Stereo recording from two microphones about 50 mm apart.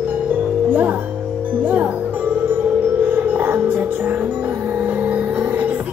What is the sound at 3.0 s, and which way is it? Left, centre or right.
Music, right.